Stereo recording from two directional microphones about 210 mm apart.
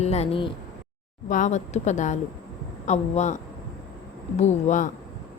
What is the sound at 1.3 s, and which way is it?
A woman's voice, 35° left (ahead or behind).